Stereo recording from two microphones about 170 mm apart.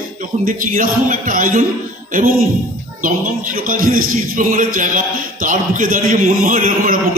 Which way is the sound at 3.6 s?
55° right (ahead or behind).